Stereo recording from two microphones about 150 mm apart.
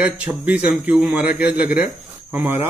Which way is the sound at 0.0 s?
10° right (ahead or behind).